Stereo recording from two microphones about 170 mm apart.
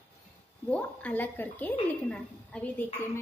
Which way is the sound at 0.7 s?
10° left (ahead or behind).